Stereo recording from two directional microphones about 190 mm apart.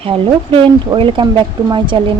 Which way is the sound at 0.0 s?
30° right (ahead or behind).